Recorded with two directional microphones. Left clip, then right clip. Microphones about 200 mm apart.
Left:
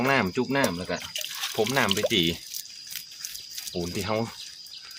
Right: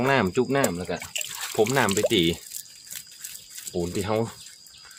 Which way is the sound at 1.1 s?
20° right (ahead or behind).